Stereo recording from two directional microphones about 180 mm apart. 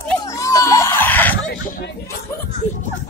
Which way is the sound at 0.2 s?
20° left (ahead or behind).